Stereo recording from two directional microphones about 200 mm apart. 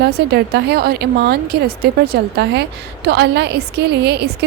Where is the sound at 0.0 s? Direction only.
55° right (ahead or behind).